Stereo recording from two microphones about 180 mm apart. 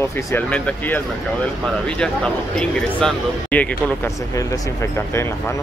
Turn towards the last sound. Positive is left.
turn(degrees=15)  # may be behind; listen again after turning